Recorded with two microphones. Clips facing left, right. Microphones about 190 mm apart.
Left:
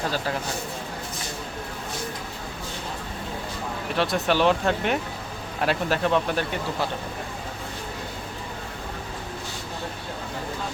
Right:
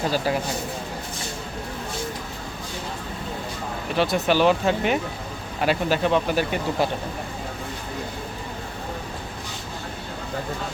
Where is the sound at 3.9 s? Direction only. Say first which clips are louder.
Right 2 dB; centre (ahead or behind).